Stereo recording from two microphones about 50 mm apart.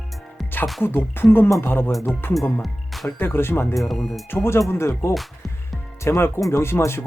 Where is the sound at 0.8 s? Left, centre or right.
Left.